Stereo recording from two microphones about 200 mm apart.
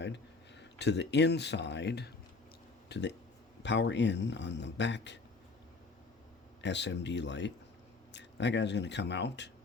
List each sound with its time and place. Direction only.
0.6 s speech: 60° left (ahead or behind)
6.6 s speech: 60° left (ahead or behind)